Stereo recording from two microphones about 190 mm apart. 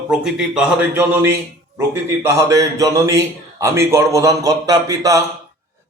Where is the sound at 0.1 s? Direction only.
5° right (ahead or behind).